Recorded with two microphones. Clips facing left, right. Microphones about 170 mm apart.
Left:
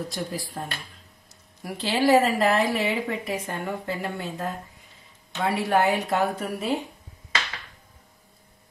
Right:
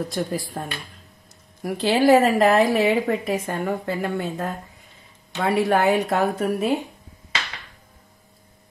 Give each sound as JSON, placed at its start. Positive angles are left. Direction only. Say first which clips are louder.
{"t": 0.1, "sound": "a woman's voice", "louder": "right 5 dB", "side_deg": -50}